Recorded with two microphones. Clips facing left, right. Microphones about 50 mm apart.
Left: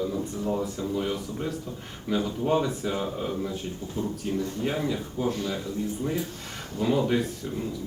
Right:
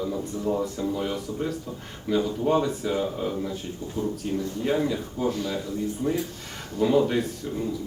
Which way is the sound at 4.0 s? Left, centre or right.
Centre.